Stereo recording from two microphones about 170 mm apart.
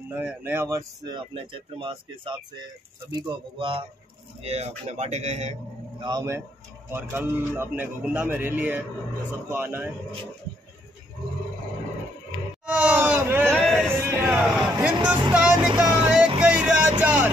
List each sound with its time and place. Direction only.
0.1 s speech: 10° right (ahead or behind); by 5.6 s 40° right (ahead or behind)
5.9 s speech: 25° right (ahead or behind)
12.6 s speech: 10° right (ahead or behind)
13.5 s music: 5° left (ahead or behind)
14.3 s a man's voice: 5° right (ahead or behind)
15.8 s music: 5° right (ahead or behind)
17.0 s vehicle: 10° right (ahead or behind)